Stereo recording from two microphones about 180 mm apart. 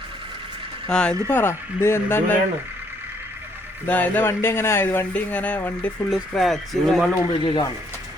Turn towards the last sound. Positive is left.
turn(degrees=25)  # may be behind; listen again after turning